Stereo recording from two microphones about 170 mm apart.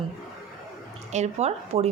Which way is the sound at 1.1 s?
40° right (ahead or behind).